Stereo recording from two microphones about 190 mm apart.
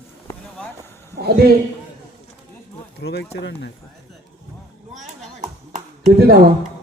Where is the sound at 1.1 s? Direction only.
55° right (ahead or behind).